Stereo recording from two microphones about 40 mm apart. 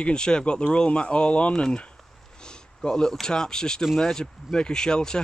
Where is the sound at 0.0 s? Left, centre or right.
Centre.